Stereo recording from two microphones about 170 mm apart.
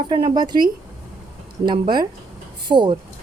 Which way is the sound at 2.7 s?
25° right (ahead or behind).